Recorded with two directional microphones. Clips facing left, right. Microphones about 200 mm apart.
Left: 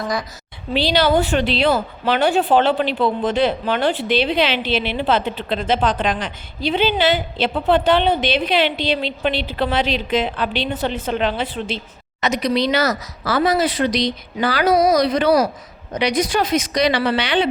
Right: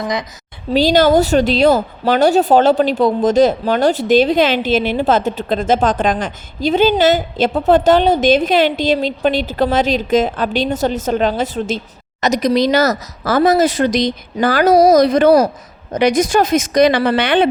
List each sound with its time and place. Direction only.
0.0 s a woman's voice: 20° right (ahead or behind)
0.7 s a woman's voice: 45° right (ahead or behind)